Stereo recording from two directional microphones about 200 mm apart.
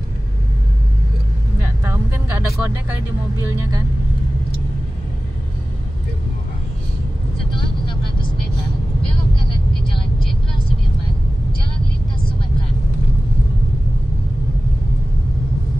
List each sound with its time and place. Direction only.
1.6 s vehicle: 10° right (ahead or behind)
3.4 s speech: 15° right (ahead or behind)
7.3 s vehicle: 25° left (ahead or behind)